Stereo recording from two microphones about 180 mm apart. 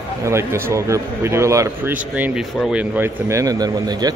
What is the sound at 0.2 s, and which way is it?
Speech, 15° right (ahead or behind).